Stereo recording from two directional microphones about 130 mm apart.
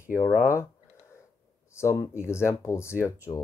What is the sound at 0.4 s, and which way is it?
Speech, 20° left (ahead or behind).